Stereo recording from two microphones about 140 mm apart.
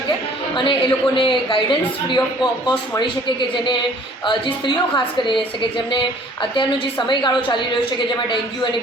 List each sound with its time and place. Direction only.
0.5 s a woman's voice: 35° left (ahead or behind)
7.1 s a woman's voice: 35° left (ahead or behind)